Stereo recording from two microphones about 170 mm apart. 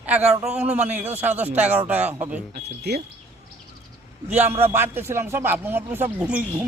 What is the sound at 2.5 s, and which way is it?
Speech, 70° right (ahead or behind).